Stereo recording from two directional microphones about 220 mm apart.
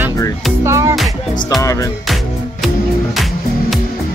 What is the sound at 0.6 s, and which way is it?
Music, 15° right (ahead or behind).